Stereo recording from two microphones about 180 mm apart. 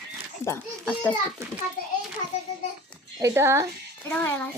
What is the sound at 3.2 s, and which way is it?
Speech, 15° right (ahead or behind).